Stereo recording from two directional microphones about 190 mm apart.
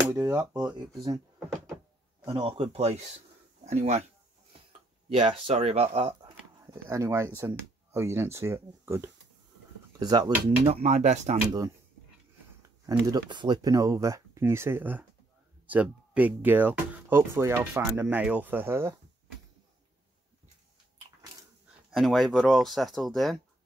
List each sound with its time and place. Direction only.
0.1 s speech: 15° right (ahead or behind)
2.2 s speech: 25° right (ahead or behind)
5.1 s speech: 30° right (ahead or behind)
6.2 s speech: 15° right (ahead or behind); by 11.3 s 35° right (ahead or behind)
12.8 s speech: 20° right (ahead or behind)
21.9 s speech: centre (ahead or behind)